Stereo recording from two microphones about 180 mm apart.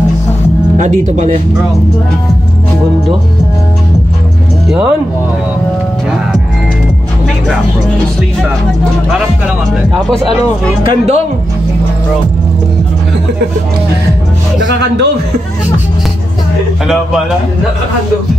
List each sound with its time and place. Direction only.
0.7 s speech: 45° right (ahead or behind)
4.6 s speech: 5° right (ahead or behind)
10.8 s speech: 30° right (ahead or behind)
14.6 s speech: 70° right (ahead or behind)